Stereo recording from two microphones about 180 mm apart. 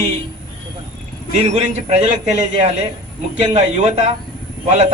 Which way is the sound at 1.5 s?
40° right (ahead or behind).